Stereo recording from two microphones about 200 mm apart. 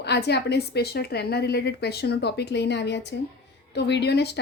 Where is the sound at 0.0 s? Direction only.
55° left (ahead or behind).